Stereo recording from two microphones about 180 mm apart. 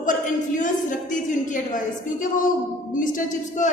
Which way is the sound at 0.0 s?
45° left (ahead or behind).